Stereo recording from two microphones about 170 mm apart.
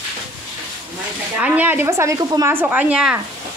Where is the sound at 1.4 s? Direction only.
10° right (ahead or behind).